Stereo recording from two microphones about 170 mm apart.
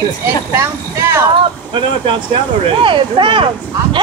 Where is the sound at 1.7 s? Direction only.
30° right (ahead or behind).